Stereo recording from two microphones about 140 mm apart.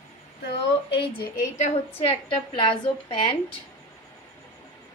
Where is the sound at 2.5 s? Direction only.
40° left (ahead or behind).